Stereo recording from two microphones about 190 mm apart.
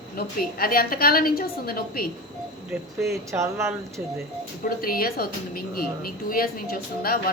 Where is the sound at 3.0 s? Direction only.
15° right (ahead or behind).